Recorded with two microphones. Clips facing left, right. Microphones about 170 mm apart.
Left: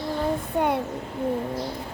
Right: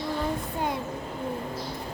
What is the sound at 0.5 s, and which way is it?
Speech, 65° left (ahead or behind).